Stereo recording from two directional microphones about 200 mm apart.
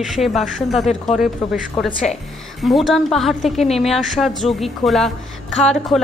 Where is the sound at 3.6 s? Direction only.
30° left (ahead or behind).